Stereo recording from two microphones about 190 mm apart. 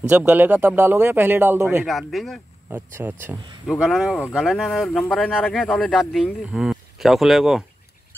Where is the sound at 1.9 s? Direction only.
Centre (ahead or behind).